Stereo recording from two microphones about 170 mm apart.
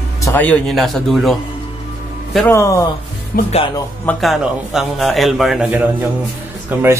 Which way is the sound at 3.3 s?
65° left (ahead or behind).